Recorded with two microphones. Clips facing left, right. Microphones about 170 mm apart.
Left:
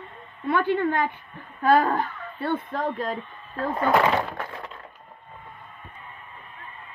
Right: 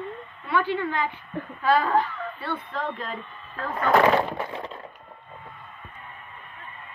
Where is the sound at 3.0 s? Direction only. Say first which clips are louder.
Left 5 dB; 35° left (ahead or behind).